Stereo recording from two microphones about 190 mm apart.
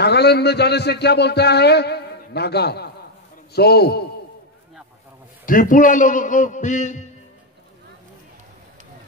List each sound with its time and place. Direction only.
0.0 s a man's voice: 60° left (ahead or behind)
5.4 s a man's voice: 45° left (ahead or behind)